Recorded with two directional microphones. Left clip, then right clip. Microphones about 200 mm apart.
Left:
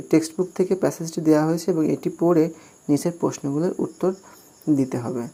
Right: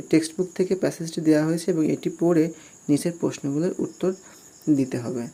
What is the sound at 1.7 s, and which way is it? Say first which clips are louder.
Speech: left 1 dB; centre (ahead or behind).